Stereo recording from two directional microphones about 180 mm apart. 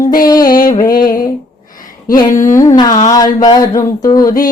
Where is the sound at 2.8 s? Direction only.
25° left (ahead or behind).